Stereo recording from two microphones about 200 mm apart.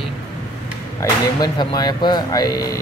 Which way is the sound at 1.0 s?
20° left (ahead or behind).